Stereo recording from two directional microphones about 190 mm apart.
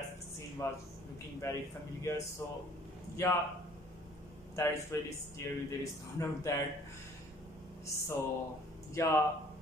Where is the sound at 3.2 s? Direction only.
15° left (ahead or behind).